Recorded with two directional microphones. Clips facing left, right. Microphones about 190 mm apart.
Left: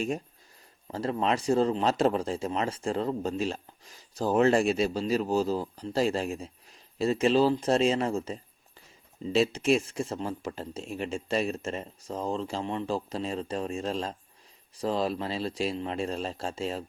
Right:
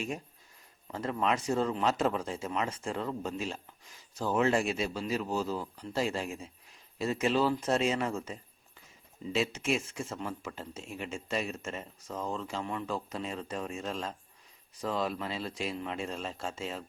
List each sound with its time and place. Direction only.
0.9 s speech: 35° left (ahead or behind)